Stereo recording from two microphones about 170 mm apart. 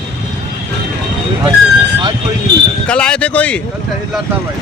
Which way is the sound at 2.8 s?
5° left (ahead or behind).